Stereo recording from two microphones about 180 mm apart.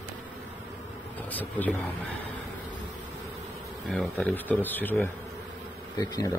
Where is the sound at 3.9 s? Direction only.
5° left (ahead or behind).